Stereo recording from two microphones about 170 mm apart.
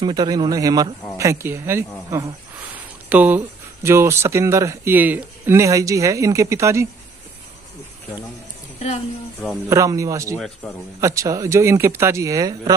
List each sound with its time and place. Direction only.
0.0 s speech: 25° right (ahead or behind)
9.7 s speech: 20° right (ahead or behind)
10.3 s speech: 5° left (ahead or behind)
11.0 s speech: 20° right (ahead or behind)